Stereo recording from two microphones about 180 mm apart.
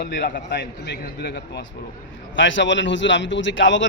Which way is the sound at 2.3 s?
90° left.